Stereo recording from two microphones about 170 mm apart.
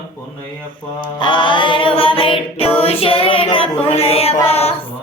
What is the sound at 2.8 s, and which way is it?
Female singing, 35° left (ahead or behind).